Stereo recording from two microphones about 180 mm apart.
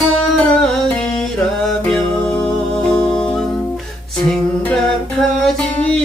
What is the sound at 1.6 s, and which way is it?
Music, 5° left (ahead or behind).